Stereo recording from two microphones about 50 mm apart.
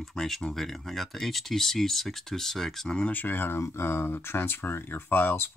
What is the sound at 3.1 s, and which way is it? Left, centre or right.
Speech, left.